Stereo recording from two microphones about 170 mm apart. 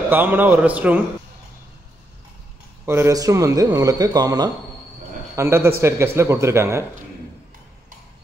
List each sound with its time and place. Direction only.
0.1 s speech: 10° right (ahead or behind)
2.8 s a man's voice: 15° right (ahead or behind)